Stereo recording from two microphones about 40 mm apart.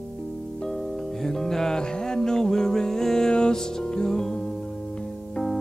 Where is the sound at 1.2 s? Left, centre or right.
Centre.